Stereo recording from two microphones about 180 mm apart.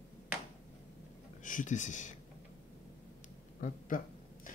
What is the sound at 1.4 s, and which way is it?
Speech, 45° left (ahead or behind).